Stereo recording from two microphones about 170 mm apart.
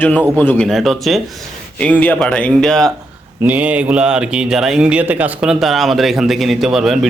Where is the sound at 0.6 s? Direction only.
Centre (ahead or behind).